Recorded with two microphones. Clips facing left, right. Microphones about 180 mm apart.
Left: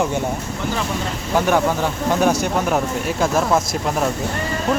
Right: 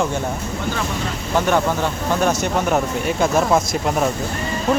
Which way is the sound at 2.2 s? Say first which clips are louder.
Left 1 dB; 10° left (ahead or behind).